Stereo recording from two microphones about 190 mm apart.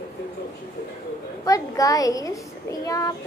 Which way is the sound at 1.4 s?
20° left (ahead or behind).